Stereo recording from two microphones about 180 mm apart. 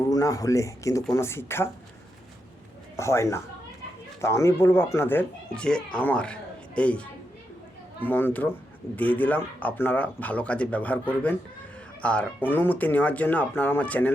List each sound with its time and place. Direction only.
0.0 s a child's voice: 20° left (ahead or behind)
2.9 s a child's voice: 15° left (ahead or behind)